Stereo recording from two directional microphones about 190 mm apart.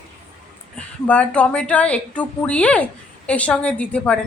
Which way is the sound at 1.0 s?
5° left (ahead or behind).